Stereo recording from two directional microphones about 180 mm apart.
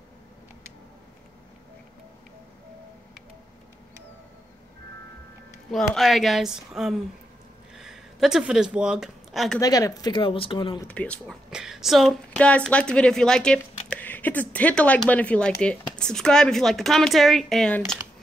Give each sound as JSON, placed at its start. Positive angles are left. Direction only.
{"t": 5.7, "sound": "speech", "side_deg": 0}
{"t": 7.7, "sound": "a sound", "side_deg": 0}
{"t": 9.6, "sound": "speech", "side_deg": 20}
{"t": 10.9, "sound": "speech", "side_deg": 5}